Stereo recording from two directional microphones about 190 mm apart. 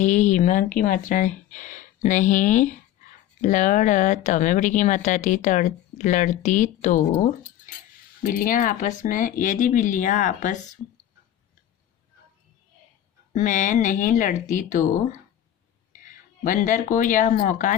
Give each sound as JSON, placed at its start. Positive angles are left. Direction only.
{"t": 0.0, "sound": "speech", "side_deg": 40}
{"t": 10.8, "sound": "speech", "side_deg": 10}
{"t": 13.3, "sound": "speech", "side_deg": 40}